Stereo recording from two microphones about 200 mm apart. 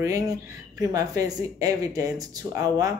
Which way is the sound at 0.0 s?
15° right (ahead or behind).